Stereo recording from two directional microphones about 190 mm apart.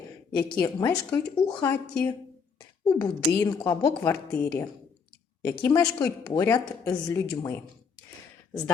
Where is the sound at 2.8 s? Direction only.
20° left (ahead or behind).